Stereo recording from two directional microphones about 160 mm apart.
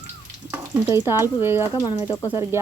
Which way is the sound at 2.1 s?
25° left (ahead or behind).